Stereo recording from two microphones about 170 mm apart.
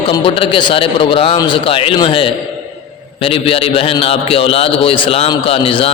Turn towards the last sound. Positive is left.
turn(degrees=35)  # may be behind; listen again after turning